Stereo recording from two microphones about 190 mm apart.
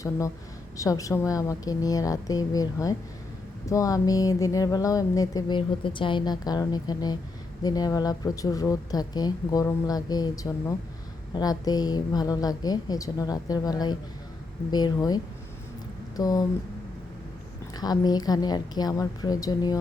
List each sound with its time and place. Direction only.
0.8 s a woman's voice: 15° left (ahead or behind)
17.7 s speech: 20° left (ahead or behind)